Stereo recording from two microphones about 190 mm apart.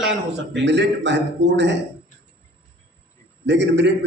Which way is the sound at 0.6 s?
65° right (ahead or behind).